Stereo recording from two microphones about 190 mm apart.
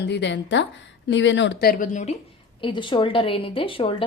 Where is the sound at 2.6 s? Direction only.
25° left (ahead or behind).